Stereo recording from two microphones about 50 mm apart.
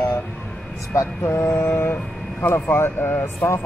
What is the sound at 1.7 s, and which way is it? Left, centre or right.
Speech, left.